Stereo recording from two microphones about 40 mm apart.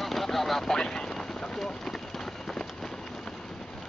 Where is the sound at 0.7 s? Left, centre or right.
Centre.